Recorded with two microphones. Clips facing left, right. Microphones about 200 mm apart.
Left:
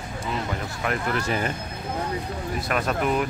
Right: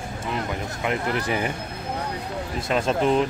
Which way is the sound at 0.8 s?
20° right (ahead or behind).